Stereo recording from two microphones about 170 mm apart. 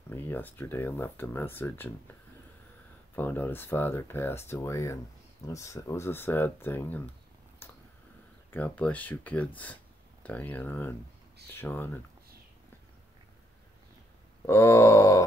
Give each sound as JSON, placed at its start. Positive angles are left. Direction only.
{"t": 0.1, "sound": "speech", "side_deg": 10}
{"t": 3.2, "sound": "speech", "side_deg": 10}
{"t": 7.6, "sound": "a sound", "side_deg": 15}
{"t": 8.5, "sound": "speech", "side_deg": 10}
{"t": 14.4, "sound": "grunt", "side_deg": 15}